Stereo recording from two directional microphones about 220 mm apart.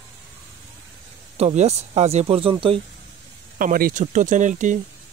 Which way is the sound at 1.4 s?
30° right (ahead or behind).